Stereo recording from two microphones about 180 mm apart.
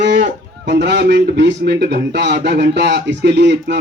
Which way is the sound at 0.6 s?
65° right (ahead or behind).